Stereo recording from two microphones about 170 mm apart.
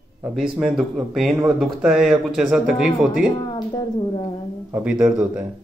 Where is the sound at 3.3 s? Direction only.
25° left (ahead or behind).